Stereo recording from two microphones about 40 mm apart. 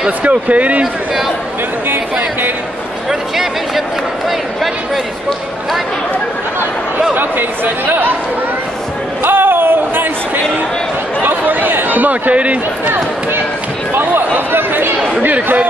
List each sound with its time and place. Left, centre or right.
0.2 s speech: right
3.1 s speech: centre
7.2 s speech: right
9.2 s a sound: right
11.2 s speech: right
14.5 s speech: right